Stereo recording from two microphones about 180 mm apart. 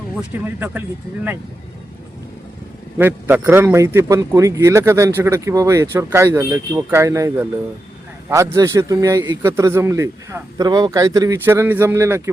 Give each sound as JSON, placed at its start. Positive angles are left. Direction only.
{"t": 0.4, "sound": "a man's voice", "side_deg": -10}
{"t": 3.0, "sound": "a man's voice", "side_deg": -10}